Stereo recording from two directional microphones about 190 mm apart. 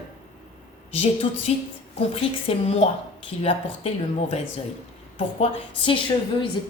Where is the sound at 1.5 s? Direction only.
35° left (ahead or behind).